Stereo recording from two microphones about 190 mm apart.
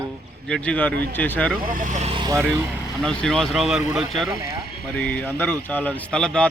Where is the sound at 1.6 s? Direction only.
45° right (ahead or behind); by 2.7 s 10° right (ahead or behind).